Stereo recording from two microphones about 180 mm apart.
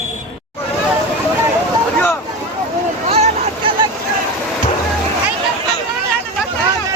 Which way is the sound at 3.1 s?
30° right (ahead or behind).